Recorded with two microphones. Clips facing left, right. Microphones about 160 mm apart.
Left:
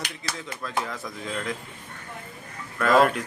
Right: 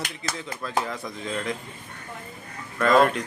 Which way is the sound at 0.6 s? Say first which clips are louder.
Right 2 dB; centre (ahead or behind).